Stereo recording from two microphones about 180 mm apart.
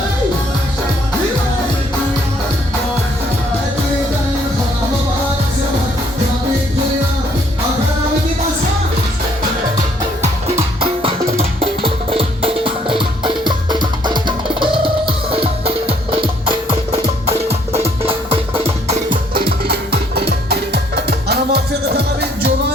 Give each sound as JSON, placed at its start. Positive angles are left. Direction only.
{"t": 11.3, "sound": "music", "side_deg": -30}
{"t": 19.5, "sound": "music", "side_deg": -60}